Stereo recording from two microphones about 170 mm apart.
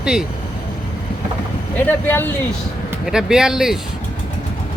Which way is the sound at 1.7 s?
10° left (ahead or behind).